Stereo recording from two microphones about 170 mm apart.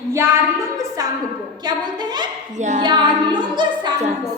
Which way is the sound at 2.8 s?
25° right (ahead or behind).